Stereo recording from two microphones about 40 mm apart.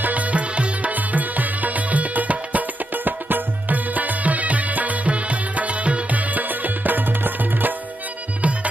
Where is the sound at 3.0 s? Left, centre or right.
Right.